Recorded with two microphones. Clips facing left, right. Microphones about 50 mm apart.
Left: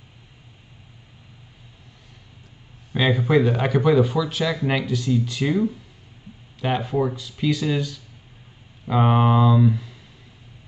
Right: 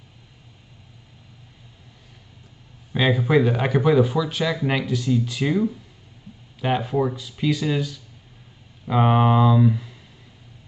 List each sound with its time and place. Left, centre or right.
2.9 s speech: centre